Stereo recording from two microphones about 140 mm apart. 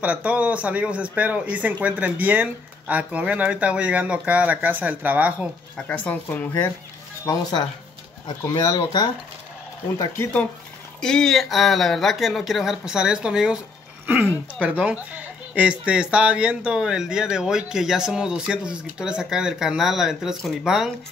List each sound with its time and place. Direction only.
0.0 s speech: 10° right (ahead or behind)
5.8 s speech: 10° left (ahead or behind)
8.4 s speech: 20° left (ahead or behind)
11.0 s speech: 5° left (ahead or behind)